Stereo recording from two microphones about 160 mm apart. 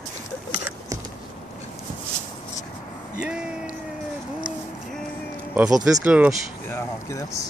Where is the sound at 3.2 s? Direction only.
5° right (ahead or behind).